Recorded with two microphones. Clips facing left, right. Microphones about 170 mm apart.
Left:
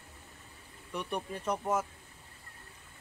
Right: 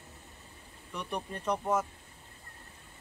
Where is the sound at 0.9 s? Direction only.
5° left (ahead or behind).